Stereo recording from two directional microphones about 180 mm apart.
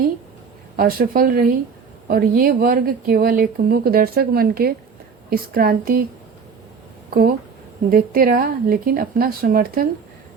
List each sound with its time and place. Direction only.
0.8 s speech: 55° right (ahead or behind)
7.1 s speech: 55° right (ahead or behind)